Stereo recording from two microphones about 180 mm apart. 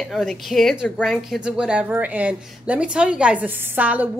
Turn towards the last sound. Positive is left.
turn(degrees=-10)  # may be behind; listen again after turning